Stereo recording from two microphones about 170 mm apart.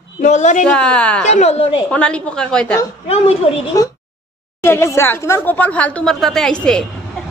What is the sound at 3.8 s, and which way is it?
Speech, 20° left (ahead or behind).